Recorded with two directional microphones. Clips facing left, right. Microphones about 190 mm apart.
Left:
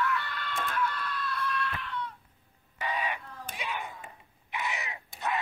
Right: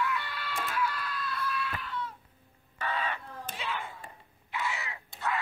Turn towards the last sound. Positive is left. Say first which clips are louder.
# even
turn(degrees=20)  # may be behind; listen again after turning